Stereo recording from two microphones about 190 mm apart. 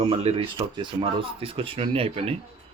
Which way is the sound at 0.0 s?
35° right (ahead or behind).